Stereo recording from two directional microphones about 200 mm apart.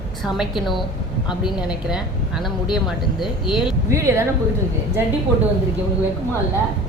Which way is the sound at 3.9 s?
15° right (ahead or behind).